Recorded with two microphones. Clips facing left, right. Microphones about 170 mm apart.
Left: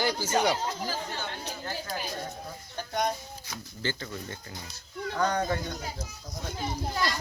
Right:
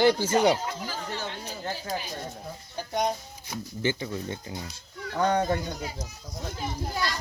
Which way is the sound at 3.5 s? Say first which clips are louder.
Right 6 dB; 15° right (ahead or behind).